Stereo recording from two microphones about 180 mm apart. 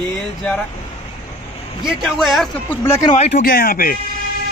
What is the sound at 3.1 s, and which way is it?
Speech, 50° left (ahead or behind).